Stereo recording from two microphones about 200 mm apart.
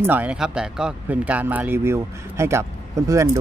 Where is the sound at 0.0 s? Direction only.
10° right (ahead or behind).